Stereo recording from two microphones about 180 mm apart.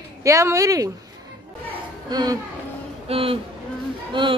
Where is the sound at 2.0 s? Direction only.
20° right (ahead or behind).